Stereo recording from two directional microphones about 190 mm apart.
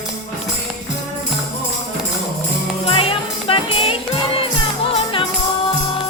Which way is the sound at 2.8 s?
30° left (ahead or behind).